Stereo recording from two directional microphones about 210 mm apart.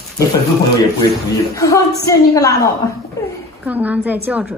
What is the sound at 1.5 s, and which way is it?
A woman's voice, 15° left (ahead or behind).